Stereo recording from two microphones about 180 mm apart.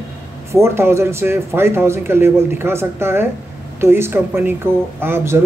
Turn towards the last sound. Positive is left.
turn(degrees=-15)  # may be behind; listen again after turning